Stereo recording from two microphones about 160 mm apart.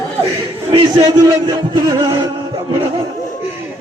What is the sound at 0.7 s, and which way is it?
Speech, 35° right (ahead or behind).